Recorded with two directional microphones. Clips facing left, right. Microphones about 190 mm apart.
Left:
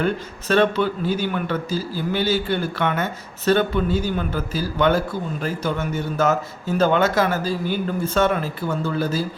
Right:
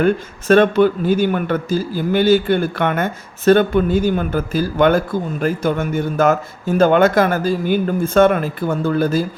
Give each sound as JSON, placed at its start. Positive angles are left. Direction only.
{"t": 0.0, "sound": "a man's voice", "side_deg": -50}